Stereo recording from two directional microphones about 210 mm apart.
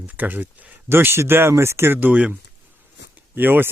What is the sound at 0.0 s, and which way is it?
Speech, 10° right (ahead or behind).